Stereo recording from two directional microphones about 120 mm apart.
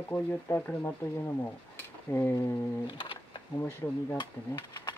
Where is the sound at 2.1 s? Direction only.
20° left (ahead or behind).